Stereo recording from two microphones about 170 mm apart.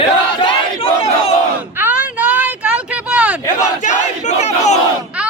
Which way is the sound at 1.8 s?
10° right (ahead or behind).